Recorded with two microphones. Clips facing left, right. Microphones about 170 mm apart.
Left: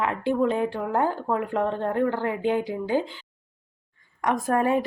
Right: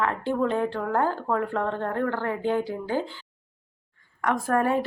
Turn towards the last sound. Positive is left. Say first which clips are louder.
# left 1 dB
turn(degrees=15)  # may be behind; listen again after turning